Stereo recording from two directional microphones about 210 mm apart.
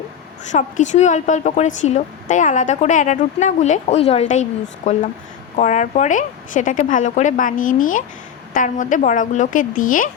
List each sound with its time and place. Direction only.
0.5 s a woman's voice: 35° left (ahead or behind)